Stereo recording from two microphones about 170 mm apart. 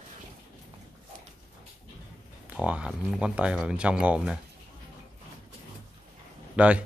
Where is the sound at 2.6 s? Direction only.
5° right (ahead or behind).